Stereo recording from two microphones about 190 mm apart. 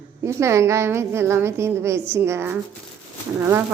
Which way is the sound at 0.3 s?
15° right (ahead or behind).